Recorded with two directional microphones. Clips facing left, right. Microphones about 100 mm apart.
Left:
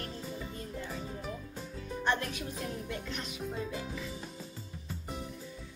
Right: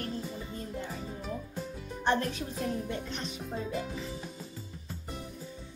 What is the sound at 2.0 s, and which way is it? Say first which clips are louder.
Speech: right 4 dB; 35° right (ahead or behind).